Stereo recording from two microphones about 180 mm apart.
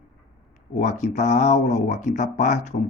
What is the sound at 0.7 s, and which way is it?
Speech, 40° left (ahead or behind).